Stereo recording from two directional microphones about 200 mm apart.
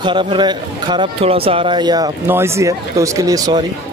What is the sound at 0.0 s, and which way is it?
Speech, 25° right (ahead or behind).